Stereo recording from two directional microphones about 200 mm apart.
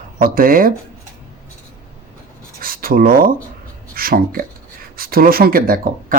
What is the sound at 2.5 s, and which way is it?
Speech, 45° right (ahead or behind).